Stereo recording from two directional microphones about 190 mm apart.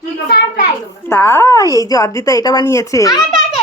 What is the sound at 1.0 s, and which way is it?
A woman's voice, 10° left (ahead or behind).